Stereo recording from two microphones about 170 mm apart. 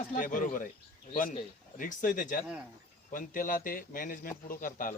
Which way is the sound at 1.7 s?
55° left (ahead or behind).